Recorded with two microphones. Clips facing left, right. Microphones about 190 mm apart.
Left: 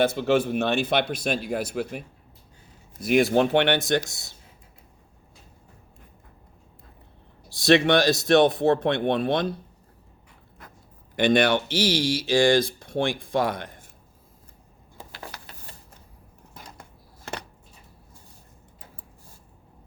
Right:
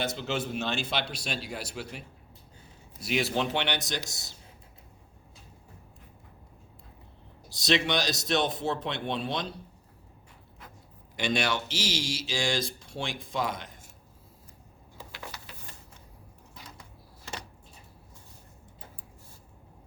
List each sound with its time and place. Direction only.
0.0 s speech: 55° left (ahead or behind)
7.6 s speech: 55° left (ahead or behind)
11.2 s speech: 55° left (ahead or behind)
17.3 s a sound: 55° left (ahead or behind)